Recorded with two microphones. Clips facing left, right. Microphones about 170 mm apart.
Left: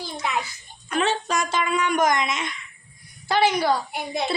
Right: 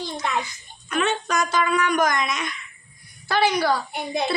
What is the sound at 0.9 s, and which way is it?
Speech, 30° left (ahead or behind).